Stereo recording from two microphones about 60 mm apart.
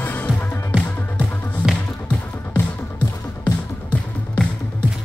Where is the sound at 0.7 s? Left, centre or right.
Centre.